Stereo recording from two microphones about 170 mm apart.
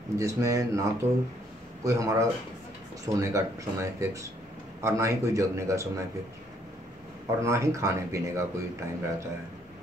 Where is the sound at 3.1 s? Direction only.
20° right (ahead or behind).